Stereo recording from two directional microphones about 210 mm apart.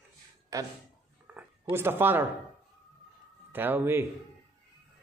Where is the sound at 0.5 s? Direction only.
15° right (ahead or behind).